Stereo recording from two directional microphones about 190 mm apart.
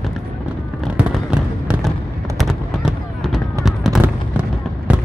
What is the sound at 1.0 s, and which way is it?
Fireworks, 5° right (ahead or behind).